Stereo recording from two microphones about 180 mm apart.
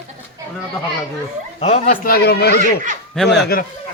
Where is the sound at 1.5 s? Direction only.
40° left (ahead or behind).